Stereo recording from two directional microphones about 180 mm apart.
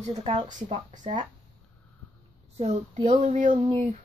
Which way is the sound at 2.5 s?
40° right (ahead or behind).